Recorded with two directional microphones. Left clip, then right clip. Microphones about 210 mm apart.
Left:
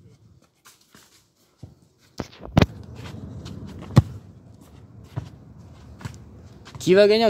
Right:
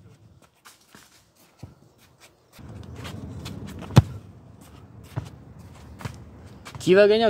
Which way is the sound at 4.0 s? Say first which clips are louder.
Right 1 dB; 20° right (ahead or behind).